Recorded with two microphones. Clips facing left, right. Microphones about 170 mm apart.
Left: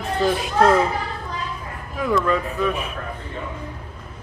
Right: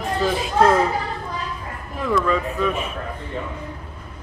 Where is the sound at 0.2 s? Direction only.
Centre (ahead or behind).